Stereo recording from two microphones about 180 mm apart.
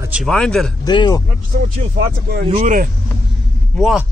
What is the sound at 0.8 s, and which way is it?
Speech, 25° left (ahead or behind).